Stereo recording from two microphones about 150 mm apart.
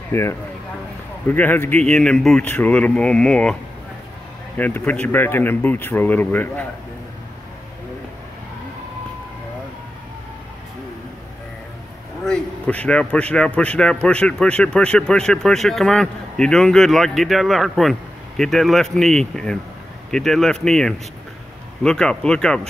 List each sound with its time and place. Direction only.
0.1 s speech: 15° left (ahead or behind)
4.6 s speech: 10° left (ahead or behind)
12.3 s speech: 5° left (ahead or behind)